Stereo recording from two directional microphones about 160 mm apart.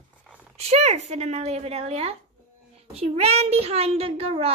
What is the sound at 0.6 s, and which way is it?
A child's voice, 45° right (ahead or behind).